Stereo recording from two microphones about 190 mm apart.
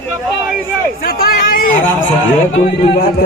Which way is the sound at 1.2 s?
50° left (ahead or behind).